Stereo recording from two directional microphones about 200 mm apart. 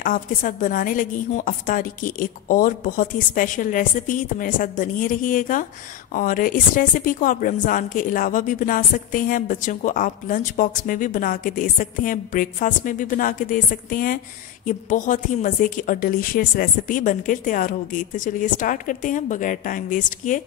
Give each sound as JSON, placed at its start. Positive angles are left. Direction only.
{"t": 0.0, "sound": "a woman's voice", "side_deg": 40}